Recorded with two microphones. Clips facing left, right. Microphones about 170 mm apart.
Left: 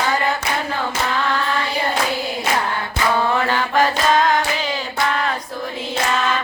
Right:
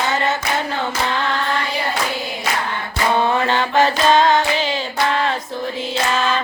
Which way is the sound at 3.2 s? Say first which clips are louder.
Right 3 dB; 25° right (ahead or behind).